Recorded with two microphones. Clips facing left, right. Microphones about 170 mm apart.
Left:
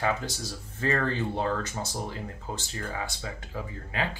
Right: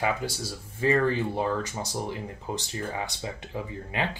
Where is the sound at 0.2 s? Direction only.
15° right (ahead or behind).